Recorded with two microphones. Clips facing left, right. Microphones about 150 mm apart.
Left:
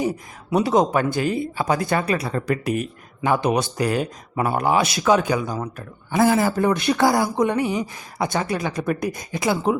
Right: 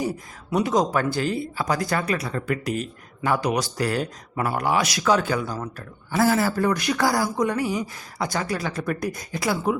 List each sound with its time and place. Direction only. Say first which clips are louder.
0.0 s speech: left 3 dB; 25° left (ahead or behind)